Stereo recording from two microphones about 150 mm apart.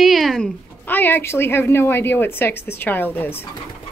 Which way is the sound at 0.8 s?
15° left (ahead or behind).